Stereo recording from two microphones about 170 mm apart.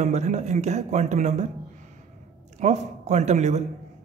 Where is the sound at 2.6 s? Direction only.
40° right (ahead or behind).